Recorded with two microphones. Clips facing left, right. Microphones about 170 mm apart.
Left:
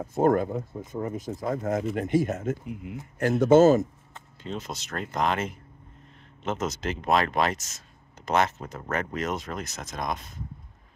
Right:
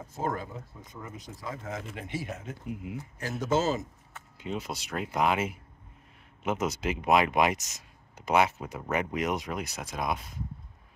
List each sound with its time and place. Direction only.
0.0 s speech: 55° left (ahead or behind)
2.6 s speech: centre (ahead or behind)
3.2 s speech: 55° left (ahead or behind)
4.4 s speech: 10° right (ahead or behind)